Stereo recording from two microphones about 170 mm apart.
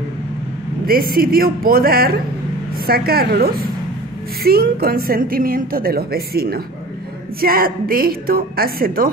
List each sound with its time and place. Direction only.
0.8 s a woman's voice: 60° right (ahead or behind)